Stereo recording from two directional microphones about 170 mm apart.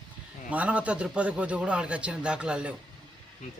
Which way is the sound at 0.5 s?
10° right (ahead or behind).